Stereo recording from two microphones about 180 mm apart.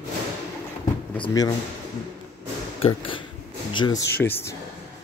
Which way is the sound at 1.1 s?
25° left (ahead or behind).